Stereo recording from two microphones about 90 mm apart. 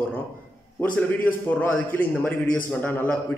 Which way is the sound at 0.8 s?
20° left (ahead or behind).